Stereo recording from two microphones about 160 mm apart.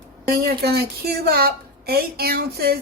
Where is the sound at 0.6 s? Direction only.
80° right.